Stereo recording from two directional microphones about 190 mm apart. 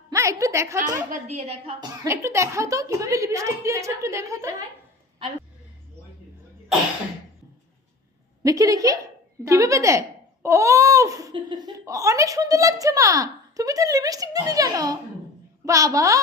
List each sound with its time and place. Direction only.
0.1 s a woman's voice: 15° right (ahead or behind)
1.1 s a woman's voice: 35° right (ahead or behind)
2.0 s speech: 15° right (ahead or behind)
8.4 s speech: 20° right (ahead or behind)